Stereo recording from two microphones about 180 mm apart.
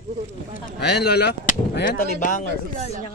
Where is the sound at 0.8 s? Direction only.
65° left (ahead or behind).